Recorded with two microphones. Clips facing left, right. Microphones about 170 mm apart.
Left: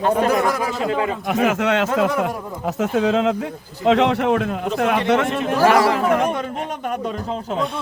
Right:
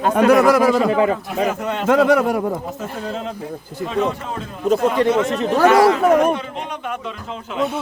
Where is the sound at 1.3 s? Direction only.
90° left.